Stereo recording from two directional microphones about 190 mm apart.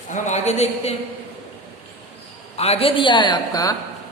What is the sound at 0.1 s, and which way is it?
Speech, 35° left (ahead or behind).